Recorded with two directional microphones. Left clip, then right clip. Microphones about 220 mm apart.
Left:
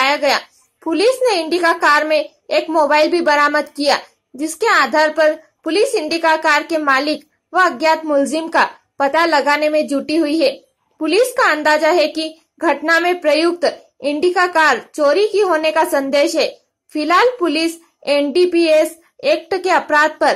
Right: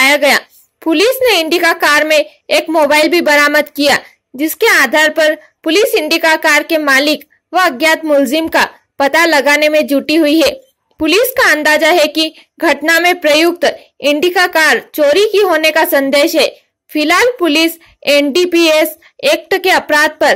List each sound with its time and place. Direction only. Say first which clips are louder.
0.0 s a woman's voice: right 6 dB; 30° right (ahead or behind)